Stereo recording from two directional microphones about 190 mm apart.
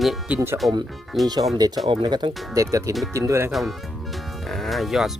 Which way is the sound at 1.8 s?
25° right (ahead or behind).